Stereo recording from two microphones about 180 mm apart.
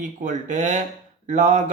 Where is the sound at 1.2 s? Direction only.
40° right (ahead or behind).